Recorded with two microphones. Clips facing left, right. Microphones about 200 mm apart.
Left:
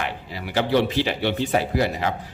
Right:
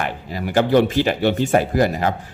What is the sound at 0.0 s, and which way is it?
Speech, 45° right (ahead or behind).